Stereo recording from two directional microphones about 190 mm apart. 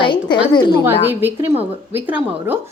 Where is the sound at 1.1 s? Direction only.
10° right (ahead or behind).